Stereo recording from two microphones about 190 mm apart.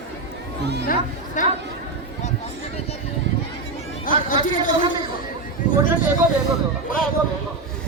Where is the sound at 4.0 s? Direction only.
45° left (ahead or behind).